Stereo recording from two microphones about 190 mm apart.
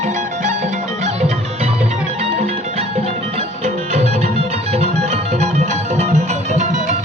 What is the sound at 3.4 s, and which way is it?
Music, 35° right (ahead or behind).